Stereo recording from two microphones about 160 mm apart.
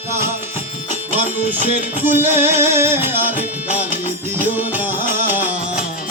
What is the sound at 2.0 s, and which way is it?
Music, 15° right (ahead or behind).